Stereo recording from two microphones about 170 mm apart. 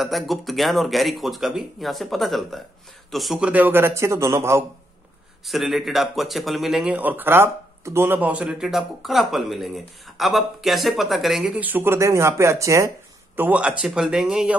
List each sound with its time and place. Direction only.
0.0 s a man's voice: centre (ahead or behind)
5.4 s a man's voice: centre (ahead or behind); by 12.9 s 20° right (ahead or behind)
13.4 s a man's voice: 10° right (ahead or behind)